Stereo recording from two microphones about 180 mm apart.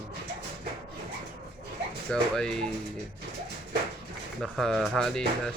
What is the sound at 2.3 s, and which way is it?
Speech, 5° left (ahead or behind).